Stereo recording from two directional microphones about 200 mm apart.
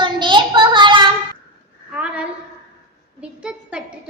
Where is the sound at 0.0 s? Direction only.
25° right (ahead or behind).